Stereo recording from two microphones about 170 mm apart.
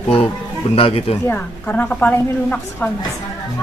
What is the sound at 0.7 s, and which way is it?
Speech, 35° left (ahead or behind).